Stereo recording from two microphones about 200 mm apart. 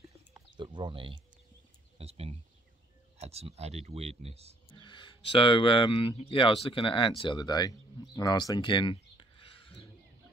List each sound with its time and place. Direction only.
0.3 s a sound: 20° right (ahead or behind)
2.0 s speech: 30° right (ahead or behind)
4.6 s speech: 25° left (ahead or behind)